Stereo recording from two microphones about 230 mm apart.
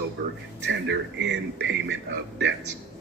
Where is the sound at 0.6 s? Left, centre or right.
Right.